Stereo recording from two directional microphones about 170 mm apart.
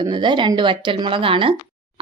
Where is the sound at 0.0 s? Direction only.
25° right (ahead or behind).